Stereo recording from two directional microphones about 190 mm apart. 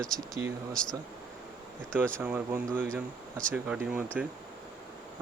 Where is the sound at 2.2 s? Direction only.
10° right (ahead or behind).